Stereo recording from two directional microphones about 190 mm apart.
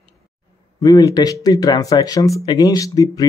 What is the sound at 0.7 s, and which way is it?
Speech, 20° left (ahead or behind).